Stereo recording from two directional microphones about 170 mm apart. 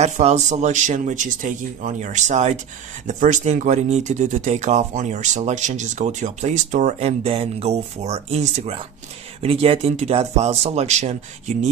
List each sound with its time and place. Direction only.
0.0 s speech: 40° right (ahead or behind)